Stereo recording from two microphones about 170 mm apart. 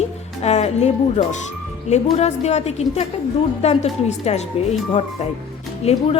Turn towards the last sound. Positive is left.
turn(degrees=40)  # may be behind; listen again after turning